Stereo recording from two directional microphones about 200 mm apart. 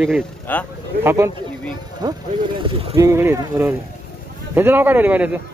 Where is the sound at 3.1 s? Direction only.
15° right (ahead or behind).